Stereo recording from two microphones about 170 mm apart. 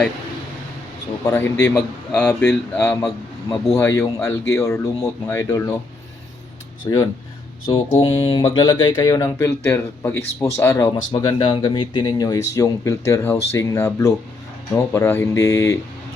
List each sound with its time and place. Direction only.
1.2 s speech: 20° left (ahead or behind)
6.9 s speech: 25° left (ahead or behind)
7.7 s speech: 35° left (ahead or behind); by 10.9 s 15° left (ahead or behind)
11.1 s speech: 25° left (ahead or behind)